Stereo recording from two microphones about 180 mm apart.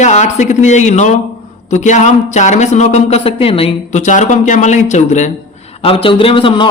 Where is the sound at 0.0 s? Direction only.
40° left (ahead or behind).